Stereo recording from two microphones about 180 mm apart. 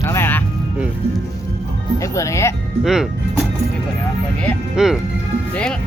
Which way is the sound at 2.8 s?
Centre (ahead or behind).